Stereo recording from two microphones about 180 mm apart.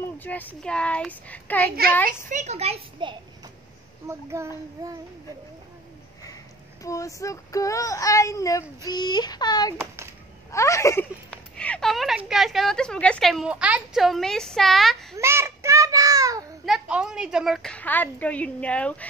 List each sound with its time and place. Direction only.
0.2 s a woman's voice: 10° left (ahead or behind)
1.8 s a woman's voice: 55° right (ahead or behind)
2.2 s a child's voice: 40° right (ahead or behind)
4.1 s a child's voice: 15° right (ahead or behind)
6.8 s child singing: 20° left (ahead or behind)
9.8 s a sound: 15° right (ahead or behind)
10.5 s a woman's voice: 15° left (ahead or behind)
15.1 s child singing: 15° right (ahead or behind)
16.6 s a woman's voice: 5° right (ahead or behind)